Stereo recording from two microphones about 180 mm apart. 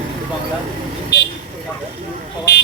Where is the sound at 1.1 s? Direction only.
70° left (ahead or behind).